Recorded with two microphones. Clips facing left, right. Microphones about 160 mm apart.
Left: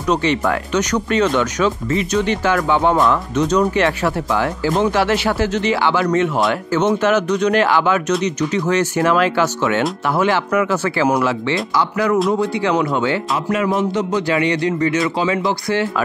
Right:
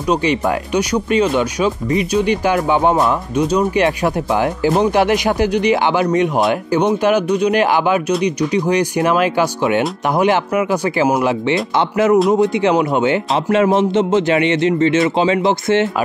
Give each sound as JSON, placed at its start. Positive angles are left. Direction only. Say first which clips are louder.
{"t": 0.1, "sound": "a man's voice", "louder": "right 1 dB", "side_deg": -15}